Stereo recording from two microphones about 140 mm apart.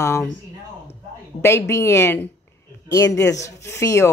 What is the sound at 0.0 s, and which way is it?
Speech, 20° left (ahead or behind).